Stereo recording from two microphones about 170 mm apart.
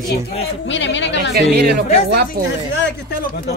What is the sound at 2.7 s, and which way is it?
Speech, 90° left.